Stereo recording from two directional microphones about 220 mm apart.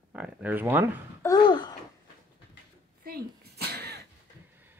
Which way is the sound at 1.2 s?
15° left (ahead or behind).